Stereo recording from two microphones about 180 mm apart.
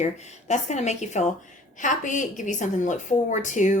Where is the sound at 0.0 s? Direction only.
40° left (ahead or behind).